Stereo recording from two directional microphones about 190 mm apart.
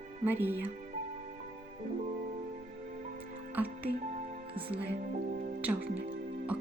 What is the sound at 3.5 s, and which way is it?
Music, 10° right (ahead or behind).